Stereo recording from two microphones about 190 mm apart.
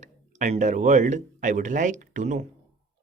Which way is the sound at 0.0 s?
40° right (ahead or behind).